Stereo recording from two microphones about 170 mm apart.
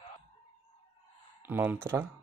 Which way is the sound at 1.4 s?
10° right (ahead or behind).